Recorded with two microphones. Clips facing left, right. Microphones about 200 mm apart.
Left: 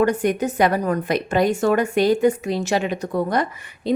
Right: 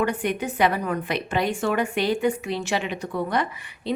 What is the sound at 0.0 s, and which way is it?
A woman's voice, 40° left (ahead or behind).